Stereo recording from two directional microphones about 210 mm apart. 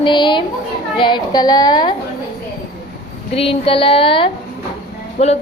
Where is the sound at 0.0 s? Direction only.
20° left (ahead or behind).